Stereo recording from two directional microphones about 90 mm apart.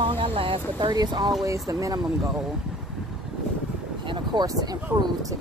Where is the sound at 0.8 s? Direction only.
50° right (ahead or behind).